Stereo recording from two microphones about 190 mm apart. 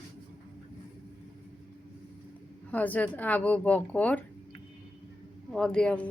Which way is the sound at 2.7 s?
10° left (ahead or behind).